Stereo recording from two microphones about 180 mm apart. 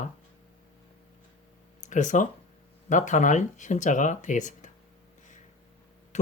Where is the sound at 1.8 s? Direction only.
45° left (ahead or behind).